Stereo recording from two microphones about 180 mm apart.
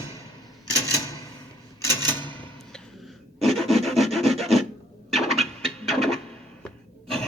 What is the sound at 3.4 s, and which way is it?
Rub, centre (ahead or behind).